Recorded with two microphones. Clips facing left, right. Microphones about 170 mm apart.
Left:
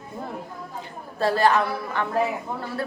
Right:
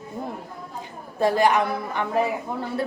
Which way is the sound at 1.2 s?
15° right (ahead or behind).